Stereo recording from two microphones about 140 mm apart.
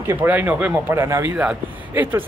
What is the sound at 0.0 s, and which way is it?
Speech, 15° right (ahead or behind).